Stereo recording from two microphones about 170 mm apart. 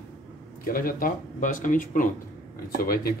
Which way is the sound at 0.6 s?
55° left (ahead or behind).